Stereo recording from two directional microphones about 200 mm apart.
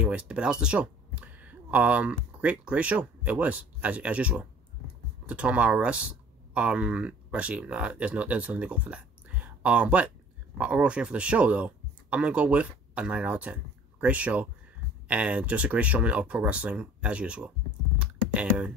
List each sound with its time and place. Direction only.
0.0 s speech: 5° right (ahead or behind)
17.9 s computer keyboard: 5° right (ahead or behind)